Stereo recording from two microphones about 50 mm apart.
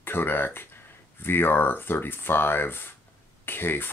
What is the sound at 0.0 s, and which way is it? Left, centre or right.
Speech, left.